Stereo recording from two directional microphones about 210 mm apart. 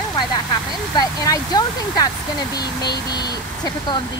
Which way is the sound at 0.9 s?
20° left (ahead or behind).